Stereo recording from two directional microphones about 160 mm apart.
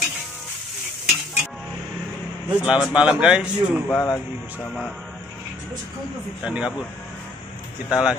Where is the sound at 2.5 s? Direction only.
5° right (ahead or behind).